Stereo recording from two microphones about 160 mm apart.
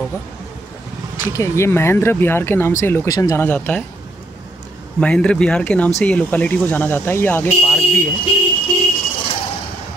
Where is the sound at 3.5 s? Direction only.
10° left (ahead or behind).